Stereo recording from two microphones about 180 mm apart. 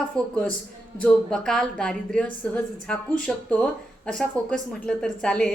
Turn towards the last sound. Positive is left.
turn(degrees=5)  # may be behind; listen again after turning